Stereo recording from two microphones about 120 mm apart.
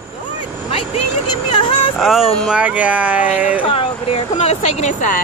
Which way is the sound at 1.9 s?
Centre (ahead or behind).